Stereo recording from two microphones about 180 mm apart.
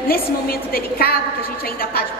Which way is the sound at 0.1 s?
55° left (ahead or behind).